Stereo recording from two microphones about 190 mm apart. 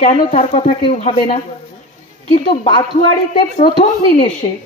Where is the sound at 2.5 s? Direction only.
25° left (ahead or behind).